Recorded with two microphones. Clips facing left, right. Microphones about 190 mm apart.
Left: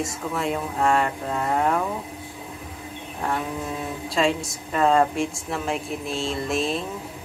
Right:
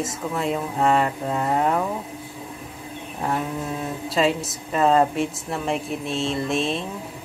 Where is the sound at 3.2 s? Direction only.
Centre (ahead or behind).